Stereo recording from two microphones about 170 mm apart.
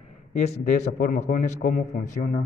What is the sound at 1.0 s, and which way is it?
A man's voice, 55° left (ahead or behind).